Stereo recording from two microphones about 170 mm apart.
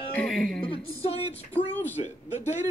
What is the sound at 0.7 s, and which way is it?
Music, 35° left (ahead or behind).